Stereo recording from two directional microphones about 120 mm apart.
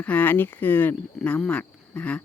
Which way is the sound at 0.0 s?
15° left (ahead or behind).